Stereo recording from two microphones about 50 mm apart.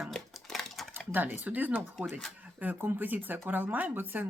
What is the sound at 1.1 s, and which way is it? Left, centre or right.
Speech, right.